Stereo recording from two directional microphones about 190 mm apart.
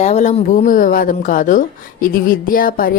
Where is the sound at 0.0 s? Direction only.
40° left (ahead or behind).